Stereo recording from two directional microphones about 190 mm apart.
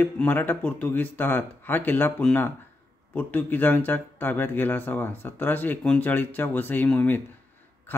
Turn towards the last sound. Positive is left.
turn(degrees=10)  # may be behind; listen again after turning